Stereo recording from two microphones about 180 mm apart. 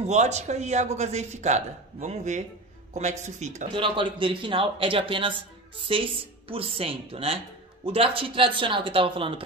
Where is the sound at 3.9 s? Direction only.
30° right (ahead or behind).